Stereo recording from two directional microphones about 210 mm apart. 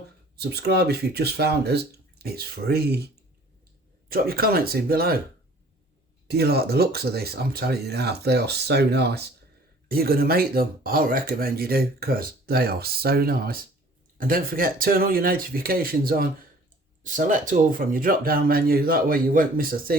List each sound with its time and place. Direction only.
0.3 s speech: 50° right (ahead or behind)
4.1 s speech: 45° right (ahead or behind)
6.2 s speech: 50° right (ahead or behind)